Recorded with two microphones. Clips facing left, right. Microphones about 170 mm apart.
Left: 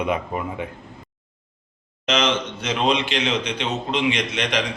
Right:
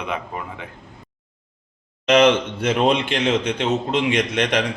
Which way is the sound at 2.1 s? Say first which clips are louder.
Right 7 dB; 60° right (ahead or behind).